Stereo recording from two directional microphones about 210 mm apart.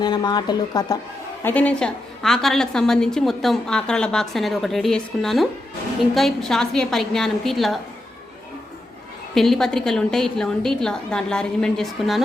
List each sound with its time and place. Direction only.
0.0 s speech: 20° left (ahead or behind)
1.5 s a woman's voice: 5° left (ahead or behind)
9.3 s a woman's voice: centre (ahead or behind)